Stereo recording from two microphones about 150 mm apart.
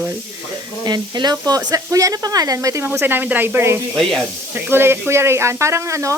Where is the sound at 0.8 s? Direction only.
30° right (ahead or behind).